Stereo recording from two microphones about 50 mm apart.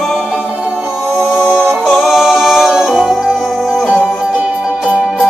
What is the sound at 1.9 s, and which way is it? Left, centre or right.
Music, centre.